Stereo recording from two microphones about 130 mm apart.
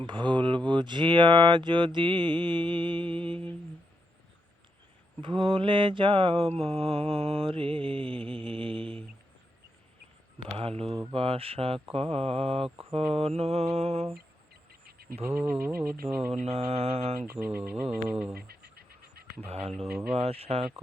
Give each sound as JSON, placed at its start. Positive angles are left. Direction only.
{"t": 0.0, "sound": "speech", "side_deg": -35}
{"t": 5.2, "sound": "mantra", "side_deg": -40}
{"t": 10.6, "sound": "mantra", "side_deg": -50}
{"t": 15.4, "sound": "bird", "side_deg": -15}
{"t": 16.3, "sound": "mantra", "side_deg": -55}
{"t": 17.2, "sound": "bird", "side_deg": -15}
{"t": 19.5, "sound": "mantra", "side_deg": -50}
{"t": 19.7, "sound": "speech", "side_deg": 0}
{"t": 20.1, "sound": "mantra", "side_deg": -50}